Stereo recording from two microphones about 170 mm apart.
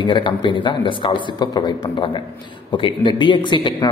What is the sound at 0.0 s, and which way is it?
A man's voice, 30° left (ahead or behind).